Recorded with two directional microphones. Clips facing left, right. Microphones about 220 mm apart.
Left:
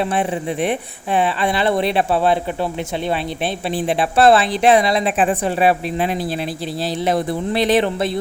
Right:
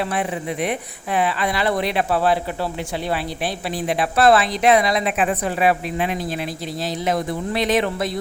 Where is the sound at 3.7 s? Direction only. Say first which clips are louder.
Left 3 dB; 30° left (ahead or behind).